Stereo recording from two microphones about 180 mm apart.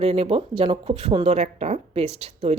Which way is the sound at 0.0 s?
35° right (ahead or behind).